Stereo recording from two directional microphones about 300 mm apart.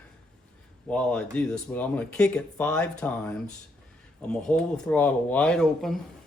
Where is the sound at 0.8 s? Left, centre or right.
Centre.